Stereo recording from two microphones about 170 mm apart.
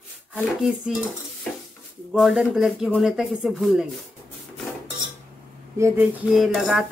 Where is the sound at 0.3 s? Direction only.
5° right (ahead or behind).